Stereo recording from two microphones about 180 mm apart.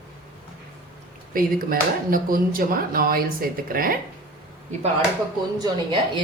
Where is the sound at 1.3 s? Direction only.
50° right (ahead or behind).